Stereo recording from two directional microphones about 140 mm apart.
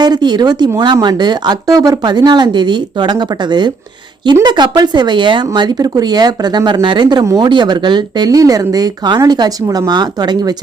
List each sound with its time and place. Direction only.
0.0 s speech: 30° right (ahead or behind)